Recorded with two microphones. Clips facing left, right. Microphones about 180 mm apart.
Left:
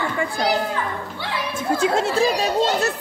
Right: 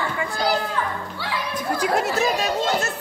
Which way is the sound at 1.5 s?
25° left (ahead or behind).